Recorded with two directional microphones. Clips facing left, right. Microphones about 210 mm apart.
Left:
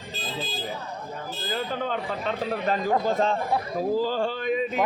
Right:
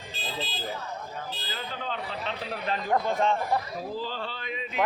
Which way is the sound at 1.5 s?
50° left (ahead or behind).